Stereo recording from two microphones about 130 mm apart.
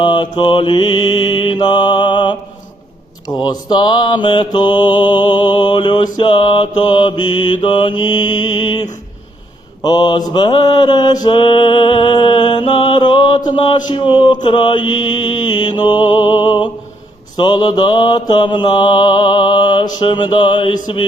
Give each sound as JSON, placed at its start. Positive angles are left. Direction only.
{"t": 0.0, "sound": "mantra", "side_deg": 35}
{"t": 9.8, "sound": "mantra", "side_deg": 35}